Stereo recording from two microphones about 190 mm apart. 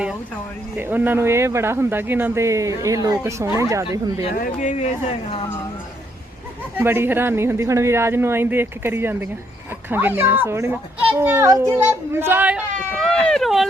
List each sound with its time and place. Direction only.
0.8 s speech: 10° right (ahead or behind)
4.4 s speech: 45° left (ahead or behind)
6.7 s speech: 10° right (ahead or behind)